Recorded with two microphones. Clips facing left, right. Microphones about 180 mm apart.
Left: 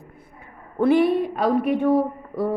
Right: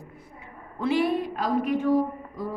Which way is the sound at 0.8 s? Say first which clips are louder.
Left 6 dB; 60° left (ahead or behind).